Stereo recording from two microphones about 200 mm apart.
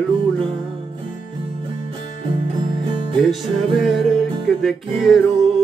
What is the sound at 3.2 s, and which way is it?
Music, centre (ahead or behind).